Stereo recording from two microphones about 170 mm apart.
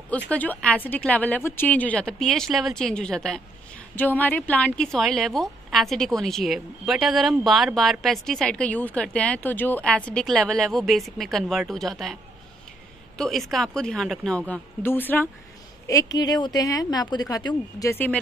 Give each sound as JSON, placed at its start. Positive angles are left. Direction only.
{"t": 0.3, "sound": "a woman's voice", "side_deg": 10}
{"t": 13.2, "sound": "a woman's voice", "side_deg": 0}
{"t": 16.2, "sound": "speech", "side_deg": 25}